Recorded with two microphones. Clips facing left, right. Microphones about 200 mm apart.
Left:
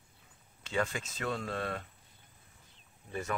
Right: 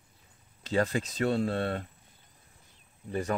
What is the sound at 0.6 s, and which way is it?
Speech, 35° right (ahead or behind).